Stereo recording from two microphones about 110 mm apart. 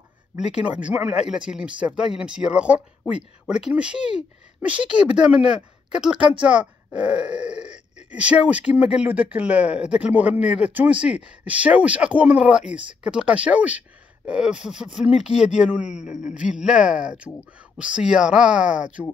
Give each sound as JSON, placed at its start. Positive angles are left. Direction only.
{"t": 0.4, "sound": "speech", "side_deg": -10}
{"t": 6.1, "sound": "speech", "side_deg": -50}
{"t": 6.4, "sound": "speech", "side_deg": -10}